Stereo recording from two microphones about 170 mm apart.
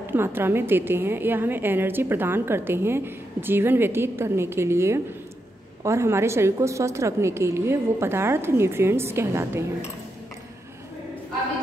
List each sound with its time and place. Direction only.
0.0 s a woman's voice: 10° right (ahead or behind)